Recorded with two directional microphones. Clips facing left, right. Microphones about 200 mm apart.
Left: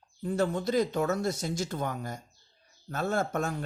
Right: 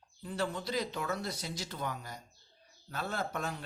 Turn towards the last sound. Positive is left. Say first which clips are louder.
# left 7 dB
turn(degrees=50)  # may be behind; listen again after turning